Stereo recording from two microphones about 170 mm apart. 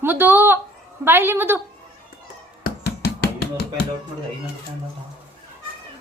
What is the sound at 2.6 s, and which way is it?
Music, 75° left (ahead or behind).